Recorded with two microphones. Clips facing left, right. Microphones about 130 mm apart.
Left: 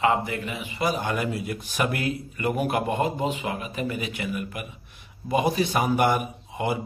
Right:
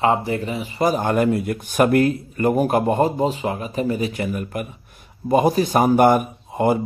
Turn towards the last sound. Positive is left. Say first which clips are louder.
# right 8 dB
turn(degrees=-45)  # may be behind; listen again after turning